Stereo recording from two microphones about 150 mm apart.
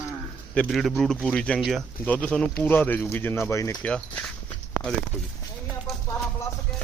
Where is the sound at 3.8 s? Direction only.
5° left (ahead or behind).